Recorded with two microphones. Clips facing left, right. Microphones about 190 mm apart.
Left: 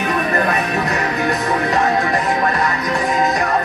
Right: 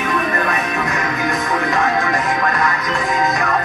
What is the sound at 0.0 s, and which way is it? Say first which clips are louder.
Music: left 1 dB; 35° left (ahead or behind).